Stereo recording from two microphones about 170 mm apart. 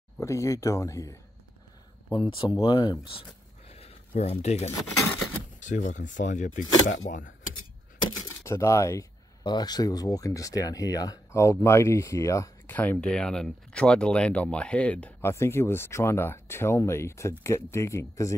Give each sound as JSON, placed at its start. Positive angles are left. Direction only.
{"t": 0.2, "sound": "speech", "side_deg": 15}
{"t": 2.1, "sound": "speech", "side_deg": 30}
{"t": 4.2, "sound": "speech", "side_deg": 40}
{"t": 8.5, "sound": "speech", "side_deg": 15}